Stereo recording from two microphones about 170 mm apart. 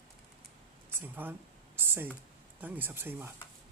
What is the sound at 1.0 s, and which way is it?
Speech, 10° right (ahead or behind).